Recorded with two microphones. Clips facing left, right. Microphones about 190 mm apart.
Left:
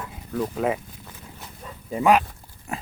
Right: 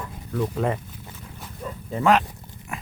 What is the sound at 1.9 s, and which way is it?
Speech, 10° left (ahead or behind).